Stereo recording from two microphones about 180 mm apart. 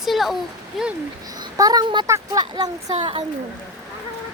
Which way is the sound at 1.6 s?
20° right (ahead or behind).